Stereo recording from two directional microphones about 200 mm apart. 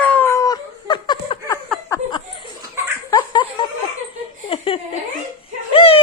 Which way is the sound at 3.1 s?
20° left (ahead or behind).